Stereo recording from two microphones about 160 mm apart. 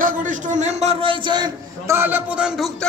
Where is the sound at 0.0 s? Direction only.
55° right (ahead or behind); by 2.0 s 25° right (ahead or behind).